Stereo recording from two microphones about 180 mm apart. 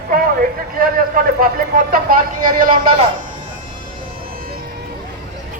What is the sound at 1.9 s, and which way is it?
Speech, 50° right (ahead or behind).